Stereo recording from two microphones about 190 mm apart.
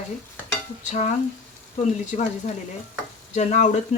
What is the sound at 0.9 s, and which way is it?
Speech, 35° left (ahead or behind).